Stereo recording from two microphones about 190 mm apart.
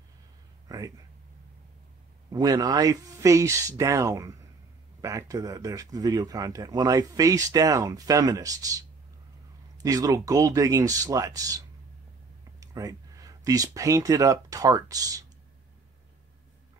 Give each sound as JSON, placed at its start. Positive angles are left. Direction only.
{"t": 0.7, "sound": "speech", "side_deg": -20}
{"t": 2.3, "sound": "speech", "side_deg": -20}
{"t": 9.8, "sound": "speech", "side_deg": -20}